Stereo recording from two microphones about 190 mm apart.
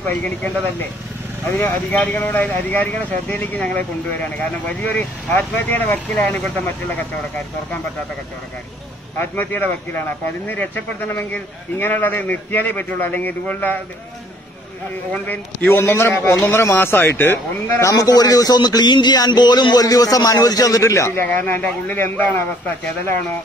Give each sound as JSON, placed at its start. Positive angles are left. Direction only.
{"t": 0.0, "sound": "a man's voice", "side_deg": 10}
{"t": 9.2, "sound": "a man's voice", "side_deg": 10}
{"t": 15.2, "sound": "a man's voice", "side_deg": 10}